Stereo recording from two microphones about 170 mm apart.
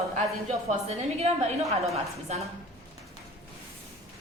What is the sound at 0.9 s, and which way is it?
A woman's voice, 35° right (ahead or behind).